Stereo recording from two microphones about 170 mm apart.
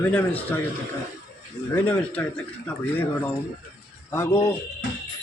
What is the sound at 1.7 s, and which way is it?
A man's voice, 10° left (ahead or behind).